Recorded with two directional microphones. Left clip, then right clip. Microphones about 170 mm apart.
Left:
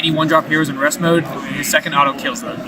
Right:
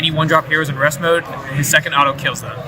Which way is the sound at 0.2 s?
25° left (ahead or behind).